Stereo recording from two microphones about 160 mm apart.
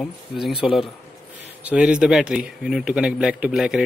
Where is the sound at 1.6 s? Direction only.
10° right (ahead or behind).